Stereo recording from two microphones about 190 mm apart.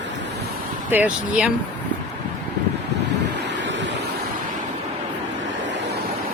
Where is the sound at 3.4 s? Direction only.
70° right (ahead or behind).